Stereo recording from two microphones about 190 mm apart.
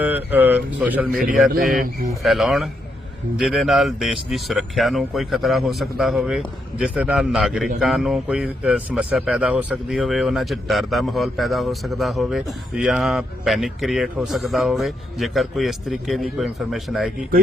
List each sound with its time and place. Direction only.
0.0 s speech: 10° right (ahead or behind)
1.5 s speech: 45° right (ahead or behind)
2.2 s speech: centre (ahead or behind)